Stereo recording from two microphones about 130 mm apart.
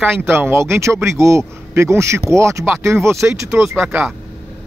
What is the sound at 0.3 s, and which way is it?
Speech, 20° right (ahead or behind).